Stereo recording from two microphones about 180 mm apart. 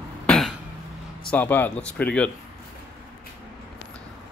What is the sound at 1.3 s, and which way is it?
Speech, 10° left (ahead or behind).